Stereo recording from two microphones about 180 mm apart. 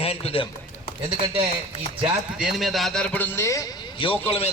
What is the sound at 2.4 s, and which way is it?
A man's voice, centre (ahead or behind).